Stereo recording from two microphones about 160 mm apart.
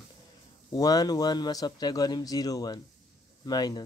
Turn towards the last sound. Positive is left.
turn(degrees=25)  # may be behind; listen again after turning